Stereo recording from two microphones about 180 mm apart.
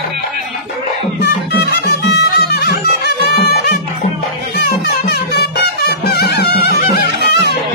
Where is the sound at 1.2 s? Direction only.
65° left (ahead or behind).